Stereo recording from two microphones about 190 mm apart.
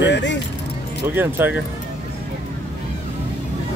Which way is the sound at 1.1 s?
10° right (ahead or behind).